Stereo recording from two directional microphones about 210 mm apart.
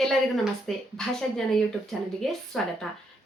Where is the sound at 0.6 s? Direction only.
Centre (ahead or behind).